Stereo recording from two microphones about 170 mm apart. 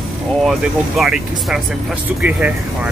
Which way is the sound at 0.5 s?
Centre (ahead or behind).